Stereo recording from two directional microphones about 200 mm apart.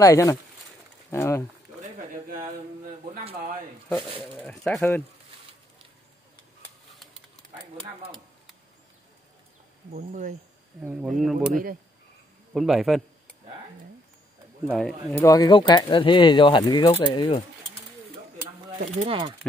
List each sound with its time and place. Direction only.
0.0 s speech: 15° left (ahead or behind)
4.2 s speech: 5° left (ahead or behind)
9.9 s speech: 40° right (ahead or behind)
10.8 s speech: 5° right (ahead or behind)
12.5 s speech: centre (ahead or behind)
14.7 s speech: 5° left (ahead or behind)
15.2 s speech: 20° left (ahead or behind)
19.0 s speech: 25° right (ahead or behind)